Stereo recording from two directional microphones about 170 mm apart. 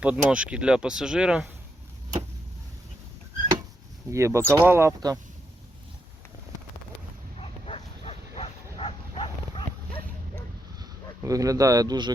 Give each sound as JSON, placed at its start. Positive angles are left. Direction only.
{"t": 0.0, "sound": "speech", "side_deg": -5}
{"t": 4.1, "sound": "speech", "side_deg": -15}
{"t": 7.3, "sound": "bow-wow", "side_deg": 35}
{"t": 10.8, "sound": "a sound", "side_deg": -20}